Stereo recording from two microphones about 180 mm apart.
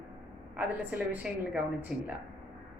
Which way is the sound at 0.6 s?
5° right (ahead or behind).